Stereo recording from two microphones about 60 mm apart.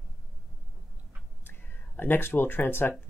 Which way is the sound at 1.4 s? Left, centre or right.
Left.